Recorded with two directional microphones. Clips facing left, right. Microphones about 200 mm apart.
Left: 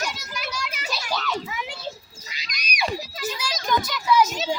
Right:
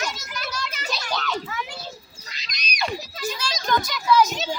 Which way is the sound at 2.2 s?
5° left (ahead or behind).